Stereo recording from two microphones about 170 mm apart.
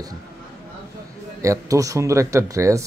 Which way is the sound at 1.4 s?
20° right (ahead or behind).